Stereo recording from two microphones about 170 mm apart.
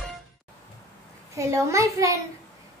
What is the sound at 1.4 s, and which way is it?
Speech, 20° right (ahead or behind).